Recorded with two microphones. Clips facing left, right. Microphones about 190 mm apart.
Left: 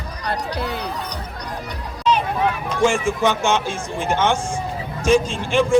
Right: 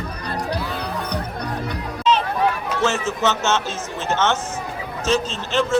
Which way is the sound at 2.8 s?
10° left (ahead or behind).